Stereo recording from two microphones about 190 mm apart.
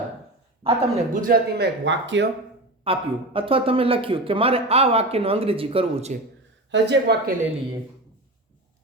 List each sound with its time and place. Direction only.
0.6 s a man's voice: 35° right (ahead or behind); by 2.2 s 70° right (ahead or behind)
2.8 s speech: 30° right (ahead or behind)
6.7 s a man's voice: 65° right (ahead or behind)